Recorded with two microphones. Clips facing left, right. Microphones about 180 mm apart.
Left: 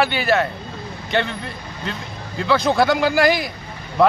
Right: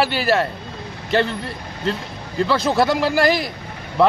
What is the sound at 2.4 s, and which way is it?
Speech, 5° right (ahead or behind).